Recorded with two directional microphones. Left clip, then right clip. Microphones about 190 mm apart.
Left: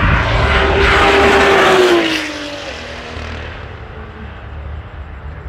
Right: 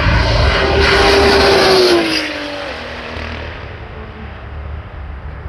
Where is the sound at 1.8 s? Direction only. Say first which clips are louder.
Even; 50° right (ahead or behind).